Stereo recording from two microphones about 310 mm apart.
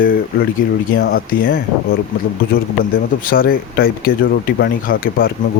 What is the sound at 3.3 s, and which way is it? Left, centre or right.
Speech, left.